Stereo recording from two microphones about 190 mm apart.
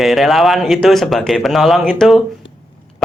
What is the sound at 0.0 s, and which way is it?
A man's voice, centre (ahead or behind).